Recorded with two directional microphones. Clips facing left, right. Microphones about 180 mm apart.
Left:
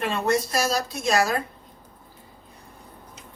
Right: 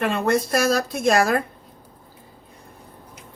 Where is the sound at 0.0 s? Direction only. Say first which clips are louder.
Right 3 dB; 55° right (ahead or behind).